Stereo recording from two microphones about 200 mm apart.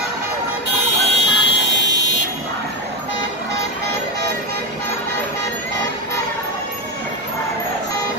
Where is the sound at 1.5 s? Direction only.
60° left (ahead or behind).